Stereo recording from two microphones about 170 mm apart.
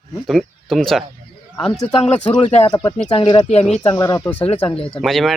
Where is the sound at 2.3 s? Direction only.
25° left (ahead or behind).